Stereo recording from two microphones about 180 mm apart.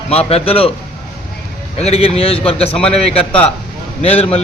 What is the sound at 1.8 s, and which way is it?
A man's voice, 35° left (ahead or behind).